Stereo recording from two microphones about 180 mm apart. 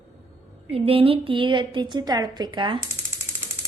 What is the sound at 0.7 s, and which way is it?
A woman's voice, 30° right (ahead or behind).